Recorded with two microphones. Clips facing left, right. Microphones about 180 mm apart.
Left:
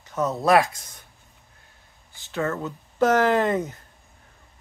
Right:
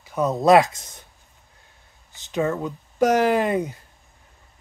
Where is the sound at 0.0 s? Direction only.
15° right (ahead or behind).